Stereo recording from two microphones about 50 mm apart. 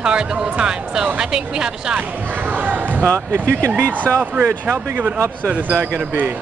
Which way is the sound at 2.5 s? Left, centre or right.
Right.